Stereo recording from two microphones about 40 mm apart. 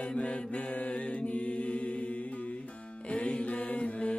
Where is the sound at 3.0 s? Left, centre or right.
Left.